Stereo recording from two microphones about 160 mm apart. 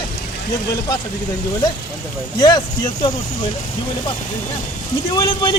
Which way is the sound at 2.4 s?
25° left (ahead or behind).